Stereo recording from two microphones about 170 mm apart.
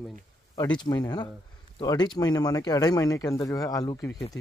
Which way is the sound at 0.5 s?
25° left (ahead or behind).